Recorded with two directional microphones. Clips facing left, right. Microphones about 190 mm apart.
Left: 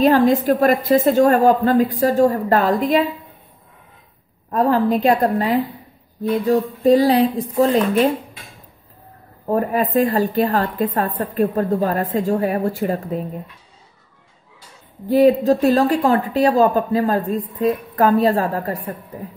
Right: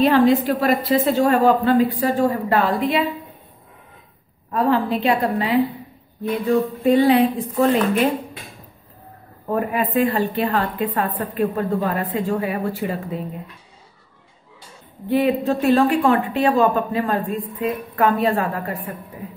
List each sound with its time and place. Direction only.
0.0 s a woman's voice: 40° left (ahead or behind)
4.5 s a woman's voice: 40° left (ahead or behind)
9.5 s a woman's voice: 40° left (ahead or behind)
15.0 s a woman's voice: 40° left (ahead or behind)